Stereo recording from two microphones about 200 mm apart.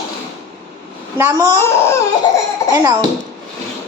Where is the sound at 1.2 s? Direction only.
15° right (ahead or behind).